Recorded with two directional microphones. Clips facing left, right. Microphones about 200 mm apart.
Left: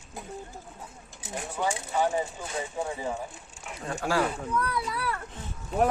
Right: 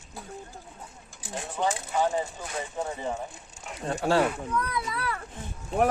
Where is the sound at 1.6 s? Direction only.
15° right (ahead or behind).